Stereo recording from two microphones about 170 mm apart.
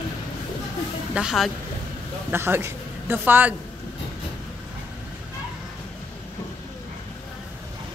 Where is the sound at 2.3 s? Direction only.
15° right (ahead or behind).